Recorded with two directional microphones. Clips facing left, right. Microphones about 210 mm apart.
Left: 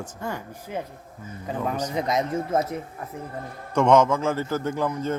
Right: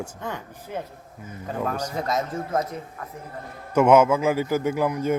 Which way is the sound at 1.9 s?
20° left (ahead or behind).